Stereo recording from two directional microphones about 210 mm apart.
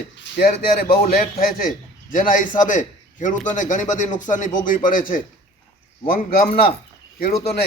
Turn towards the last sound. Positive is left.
turn(degrees=50)  # may be behind; listen again after turning